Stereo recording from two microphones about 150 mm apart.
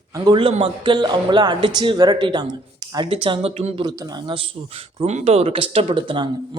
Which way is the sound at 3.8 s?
25° right (ahead or behind).